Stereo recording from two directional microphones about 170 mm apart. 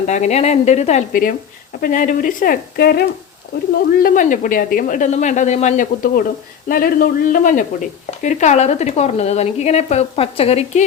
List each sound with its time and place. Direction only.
0.0 s speech: 45° left (ahead or behind)
1.8 s speech: 50° left (ahead or behind)
4.0 s speech: 50° left (ahead or behind)